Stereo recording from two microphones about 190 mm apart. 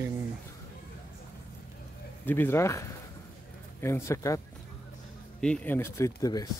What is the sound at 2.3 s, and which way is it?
Speech, 10° left (ahead or behind).